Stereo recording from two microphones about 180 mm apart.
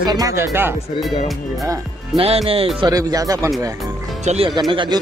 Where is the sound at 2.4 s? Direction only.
30° right (ahead or behind).